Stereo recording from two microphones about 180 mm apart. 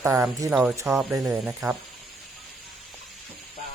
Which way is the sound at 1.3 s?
5° right (ahead or behind).